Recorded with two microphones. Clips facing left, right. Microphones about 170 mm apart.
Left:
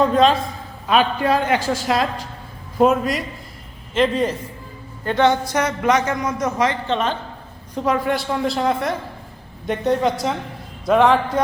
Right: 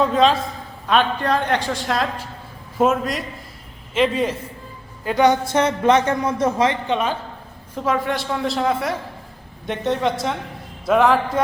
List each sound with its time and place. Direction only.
0.0 s a man's voice: centre (ahead or behind); by 6.7 s 25° right (ahead or behind)
6.8 s a man's voice: 10° right (ahead or behind)